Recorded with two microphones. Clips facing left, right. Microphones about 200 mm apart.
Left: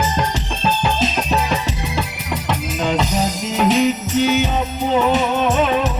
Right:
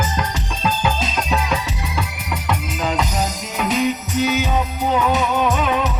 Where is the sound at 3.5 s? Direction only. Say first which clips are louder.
Left 5 dB; 30° left (ahead or behind).